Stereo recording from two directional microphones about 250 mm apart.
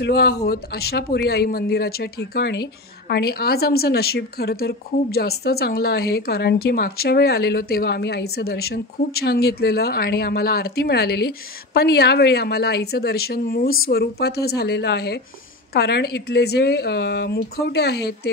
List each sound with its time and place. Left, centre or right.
0.0 s a woman's voice: left